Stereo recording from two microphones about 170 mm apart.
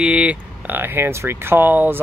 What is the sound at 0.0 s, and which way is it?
Speech, 5° right (ahead or behind).